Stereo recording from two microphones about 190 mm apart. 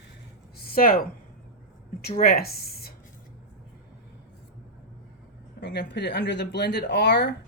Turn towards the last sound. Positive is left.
turn(degrees=60)  # may be behind; listen again after turning